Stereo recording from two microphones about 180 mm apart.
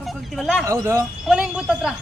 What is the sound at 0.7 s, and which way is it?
Speech, 20° right (ahead or behind).